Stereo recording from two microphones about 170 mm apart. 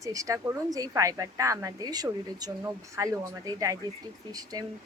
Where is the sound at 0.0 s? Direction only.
20° right (ahead or behind).